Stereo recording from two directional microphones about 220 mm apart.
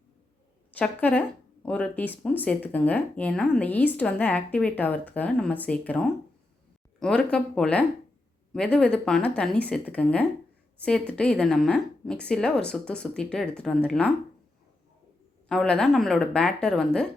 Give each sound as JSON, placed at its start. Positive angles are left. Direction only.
{"t": 0.7, "sound": "a woman's voice", "side_deg": 5}
{"t": 15.4, "sound": "a woman's voice", "side_deg": 5}